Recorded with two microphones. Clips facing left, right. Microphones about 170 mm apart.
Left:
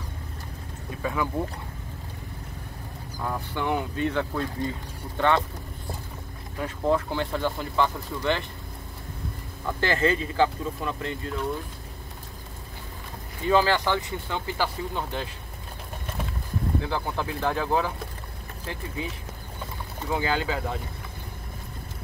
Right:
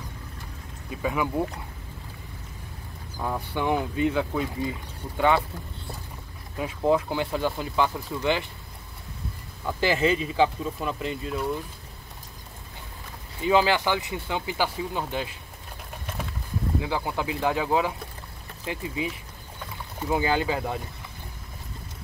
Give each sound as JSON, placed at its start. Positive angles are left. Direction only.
{"t": 1.0, "sound": "speech", "side_deg": -15}
{"t": 3.2, "sound": "speech", "side_deg": -10}
{"t": 6.6, "sound": "speech", "side_deg": -10}
{"t": 9.7, "sound": "speech", "side_deg": -10}
{"t": 13.5, "sound": "speech", "side_deg": -10}
{"t": 16.8, "sound": "speech", "side_deg": -10}
{"t": 20.0, "sound": "speech", "side_deg": -15}